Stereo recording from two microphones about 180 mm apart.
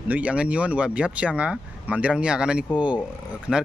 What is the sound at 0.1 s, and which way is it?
Speech, 5° right (ahead or behind).